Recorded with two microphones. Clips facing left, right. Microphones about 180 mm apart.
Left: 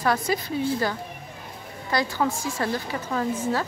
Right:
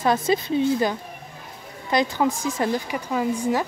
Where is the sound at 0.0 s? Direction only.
20° right (ahead or behind).